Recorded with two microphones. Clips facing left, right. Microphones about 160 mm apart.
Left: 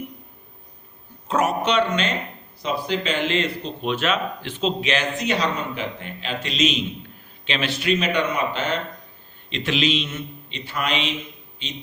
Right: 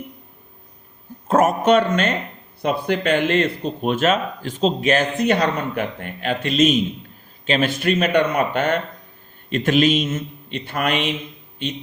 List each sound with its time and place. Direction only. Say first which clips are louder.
1.3 s speech: right 6 dB; 50° right (ahead or behind)